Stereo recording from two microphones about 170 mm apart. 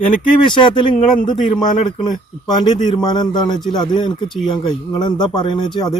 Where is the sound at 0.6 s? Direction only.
30° left (ahead or behind).